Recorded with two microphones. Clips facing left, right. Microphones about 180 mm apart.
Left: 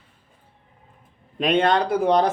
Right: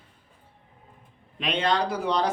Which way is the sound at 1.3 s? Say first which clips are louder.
Left 6 dB; 50° left (ahead or behind).